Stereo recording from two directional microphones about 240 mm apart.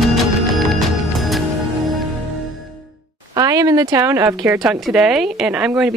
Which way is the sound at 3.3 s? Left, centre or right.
Centre.